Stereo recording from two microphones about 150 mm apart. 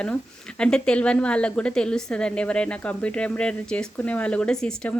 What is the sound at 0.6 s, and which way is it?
Speech, 5° left (ahead or behind).